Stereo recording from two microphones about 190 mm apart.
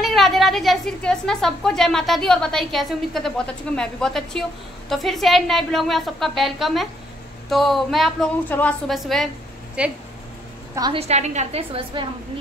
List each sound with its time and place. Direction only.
0.0 s a woman's voice: centre (ahead or behind)
10.7 s a woman's voice: 20° right (ahead or behind)
11.0 s a woman's voice: 35° right (ahead or behind)